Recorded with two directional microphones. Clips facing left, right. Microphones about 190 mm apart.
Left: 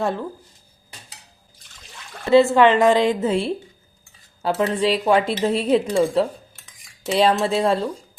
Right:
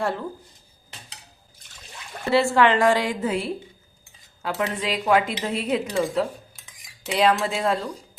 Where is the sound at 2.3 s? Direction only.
20° left (ahead or behind).